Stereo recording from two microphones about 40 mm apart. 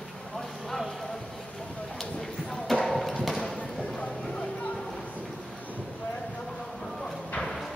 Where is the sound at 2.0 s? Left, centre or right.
Centre.